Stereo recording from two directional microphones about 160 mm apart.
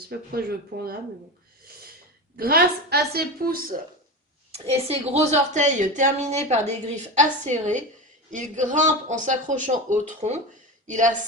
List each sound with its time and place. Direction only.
0.1 s a woman's voice: 70° right (ahead or behind)
2.3 s a woman's voice: 70° right (ahead or behind)
4.5 s a woman's voice: 40° right (ahead or behind)